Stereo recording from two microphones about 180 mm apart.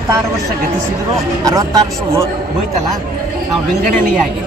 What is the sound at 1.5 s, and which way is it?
Speech, 20° right (ahead or behind).